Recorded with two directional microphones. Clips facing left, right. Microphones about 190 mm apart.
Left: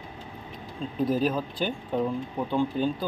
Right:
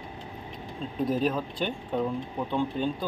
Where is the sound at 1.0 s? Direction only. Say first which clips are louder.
Left 1 dB; centre (ahead or behind).